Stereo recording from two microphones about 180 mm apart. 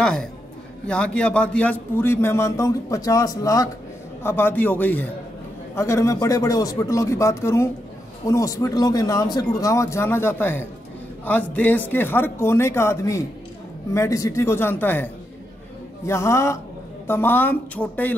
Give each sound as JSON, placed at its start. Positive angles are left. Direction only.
{"t": 0.0, "sound": "a woman's voice", "side_deg": 5}
{"t": 16.1, "sound": "a man's voice", "side_deg": 15}